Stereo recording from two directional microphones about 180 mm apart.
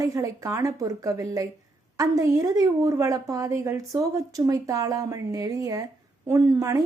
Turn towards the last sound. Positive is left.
turn(degrees=-15)  # may be behind; listen again after turning